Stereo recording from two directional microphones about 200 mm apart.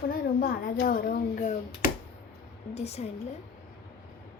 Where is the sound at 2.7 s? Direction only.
30° left (ahead or behind).